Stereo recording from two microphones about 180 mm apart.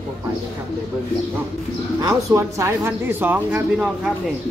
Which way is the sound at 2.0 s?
15° right (ahead or behind).